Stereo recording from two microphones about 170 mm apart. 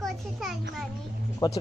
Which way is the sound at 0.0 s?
Centre (ahead or behind).